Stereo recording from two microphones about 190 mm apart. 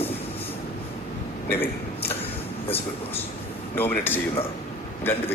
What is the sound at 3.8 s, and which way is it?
A man's voice, 10° left (ahead or behind).